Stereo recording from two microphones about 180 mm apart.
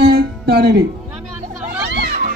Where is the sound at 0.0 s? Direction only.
65° right (ahead or behind).